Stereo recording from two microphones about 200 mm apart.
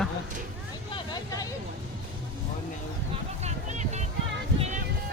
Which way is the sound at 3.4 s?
35° right (ahead or behind).